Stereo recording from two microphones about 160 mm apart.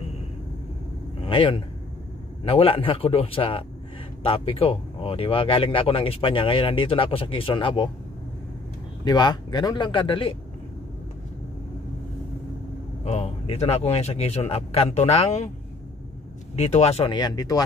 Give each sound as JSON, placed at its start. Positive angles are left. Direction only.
{"t": 1.2, "sound": "speech", "side_deg": 35}
{"t": 9.0, "sound": "speech", "side_deg": 25}
{"t": 13.0, "sound": "speech", "side_deg": 40}
{"t": 16.5, "sound": "speech", "side_deg": 45}
{"t": 17.1, "sound": "speech", "side_deg": 25}